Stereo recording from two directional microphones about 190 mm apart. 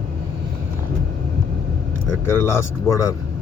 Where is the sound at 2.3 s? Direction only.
15° left (ahead or behind).